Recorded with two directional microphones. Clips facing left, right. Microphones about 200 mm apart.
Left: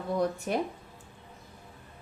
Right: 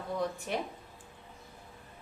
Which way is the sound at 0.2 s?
45° left (ahead or behind).